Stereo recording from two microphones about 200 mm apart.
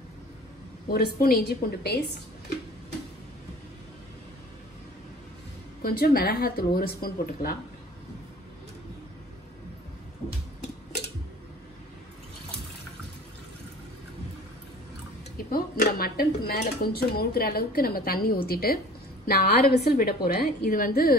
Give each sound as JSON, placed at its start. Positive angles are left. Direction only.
{"t": 0.8, "sound": "speech", "side_deg": 50}
{"t": 5.8, "sound": "speech", "side_deg": 50}
{"t": 15.3, "sound": "speech", "side_deg": 45}